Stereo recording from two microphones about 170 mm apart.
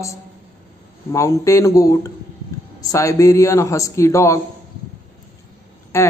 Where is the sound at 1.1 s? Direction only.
20° left (ahead or behind).